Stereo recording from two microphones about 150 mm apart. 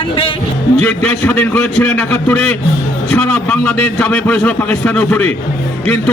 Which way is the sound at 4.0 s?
10° left (ahead or behind).